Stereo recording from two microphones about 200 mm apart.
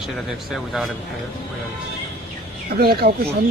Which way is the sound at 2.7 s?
50° right (ahead or behind).